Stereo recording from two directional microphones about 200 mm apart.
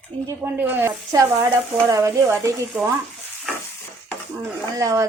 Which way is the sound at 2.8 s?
Centre (ahead or behind).